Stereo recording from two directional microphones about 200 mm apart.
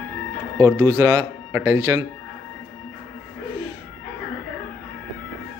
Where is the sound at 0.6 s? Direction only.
15° right (ahead or behind).